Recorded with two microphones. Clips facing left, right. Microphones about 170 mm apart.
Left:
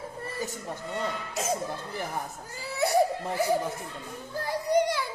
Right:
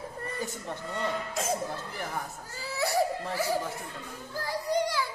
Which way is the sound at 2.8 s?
20° left (ahead or behind).